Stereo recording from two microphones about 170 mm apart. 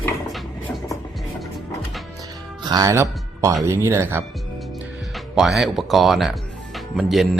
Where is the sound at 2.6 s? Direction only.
20° right (ahead or behind).